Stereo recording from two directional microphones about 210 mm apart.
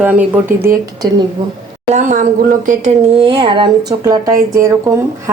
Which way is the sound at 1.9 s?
35° right (ahead or behind).